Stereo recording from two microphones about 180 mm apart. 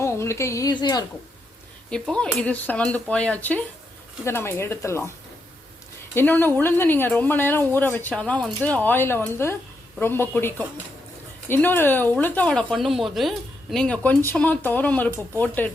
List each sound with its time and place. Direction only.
0.0 s speech: 15° left (ahead or behind)
1.9 s speech: 5° left (ahead or behind)
6.1 s speech: 10° left (ahead or behind)